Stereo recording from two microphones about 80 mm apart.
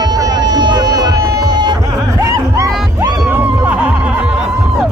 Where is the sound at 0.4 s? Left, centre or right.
Right.